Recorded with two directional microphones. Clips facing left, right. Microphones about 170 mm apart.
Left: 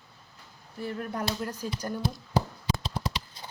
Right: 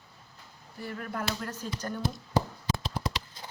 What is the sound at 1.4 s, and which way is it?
Speech, 10° left (ahead or behind).